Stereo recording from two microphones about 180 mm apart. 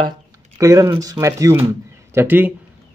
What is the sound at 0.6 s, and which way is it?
Speech, 20° right (ahead or behind).